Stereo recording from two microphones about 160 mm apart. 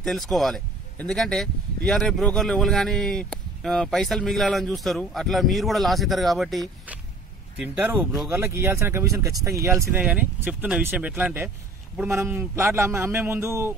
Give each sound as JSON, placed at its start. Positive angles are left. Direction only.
{"t": 0.0, "sound": "a man's voice", "side_deg": 0}